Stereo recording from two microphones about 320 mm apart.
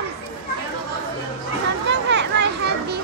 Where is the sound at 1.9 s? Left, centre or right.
Right.